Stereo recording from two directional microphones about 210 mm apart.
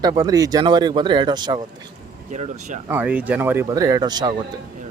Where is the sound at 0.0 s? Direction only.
20° right (ahead or behind).